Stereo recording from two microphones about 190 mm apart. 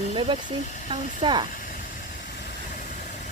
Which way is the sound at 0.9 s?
25° right (ahead or behind).